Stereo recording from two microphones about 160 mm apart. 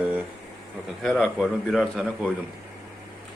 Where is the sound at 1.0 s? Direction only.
Centre (ahead or behind).